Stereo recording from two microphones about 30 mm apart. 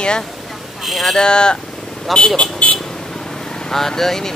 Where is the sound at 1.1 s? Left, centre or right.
Left.